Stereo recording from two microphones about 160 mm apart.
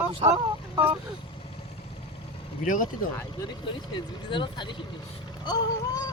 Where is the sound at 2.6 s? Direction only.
55° left (ahead or behind).